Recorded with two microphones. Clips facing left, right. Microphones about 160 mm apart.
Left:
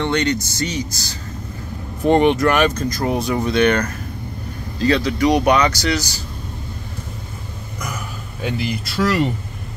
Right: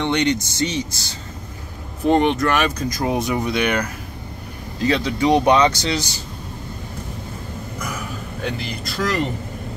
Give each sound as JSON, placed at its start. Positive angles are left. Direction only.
{"t": 0.0, "sound": "speech", "side_deg": -20}
{"t": 2.0, "sound": "speech", "side_deg": 0}
{"t": 2.9, "sound": "speech", "side_deg": -15}
{"t": 8.4, "sound": "speech", "side_deg": 5}